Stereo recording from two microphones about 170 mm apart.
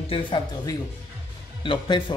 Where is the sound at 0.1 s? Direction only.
30° left (ahead or behind).